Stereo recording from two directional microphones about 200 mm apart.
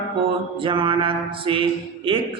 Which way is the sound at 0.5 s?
25° right (ahead or behind).